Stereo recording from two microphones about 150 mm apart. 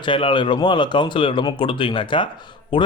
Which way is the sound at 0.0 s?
35° left (ahead or behind).